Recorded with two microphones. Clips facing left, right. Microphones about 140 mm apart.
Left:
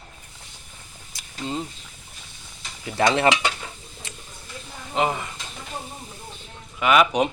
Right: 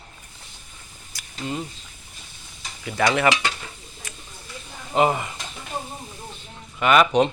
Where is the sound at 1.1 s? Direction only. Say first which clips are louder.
Even; 25° left (ahead or behind).